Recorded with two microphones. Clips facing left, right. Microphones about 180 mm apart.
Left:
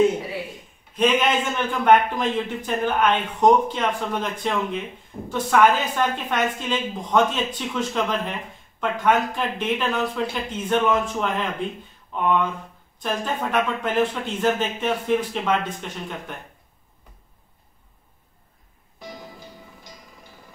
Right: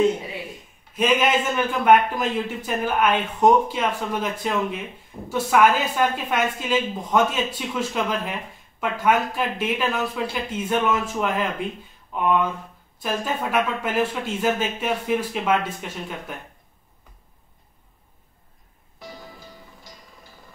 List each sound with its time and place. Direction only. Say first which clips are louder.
0.9 s a woman's voice: even; 5° right (ahead or behind)
19.1 s music: left 2 dB; 20° left (ahead or behind)